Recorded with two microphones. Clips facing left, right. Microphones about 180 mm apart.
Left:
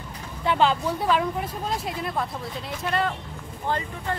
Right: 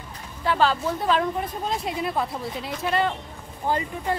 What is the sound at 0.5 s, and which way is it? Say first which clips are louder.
Speech: even; 20° left (ahead or behind).